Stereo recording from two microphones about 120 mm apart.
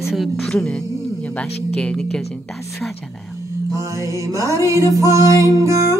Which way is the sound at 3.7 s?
25° right (ahead or behind).